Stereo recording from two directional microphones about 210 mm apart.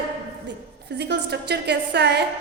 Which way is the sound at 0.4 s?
55° right (ahead or behind).